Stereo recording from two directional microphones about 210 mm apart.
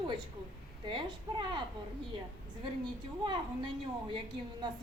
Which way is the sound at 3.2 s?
25° right (ahead or behind).